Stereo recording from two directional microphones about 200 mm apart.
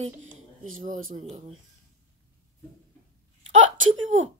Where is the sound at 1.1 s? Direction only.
30° right (ahead or behind).